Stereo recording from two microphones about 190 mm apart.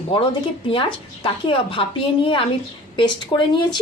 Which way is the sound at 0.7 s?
25° left (ahead or behind).